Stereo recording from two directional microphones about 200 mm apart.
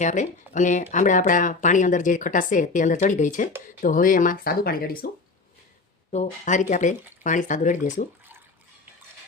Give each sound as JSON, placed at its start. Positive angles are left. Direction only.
{"t": 0.0, "sound": "speech", "side_deg": 35}
{"t": 6.1, "sound": "speech", "side_deg": 35}